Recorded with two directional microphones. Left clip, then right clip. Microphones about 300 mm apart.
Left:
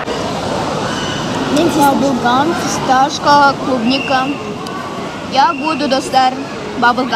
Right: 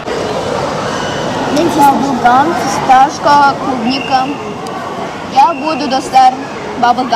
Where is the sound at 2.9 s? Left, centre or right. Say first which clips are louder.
Right 3 dB; left.